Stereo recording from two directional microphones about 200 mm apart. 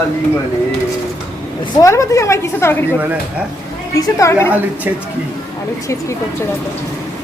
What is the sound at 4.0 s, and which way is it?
Speech, 15° left (ahead or behind).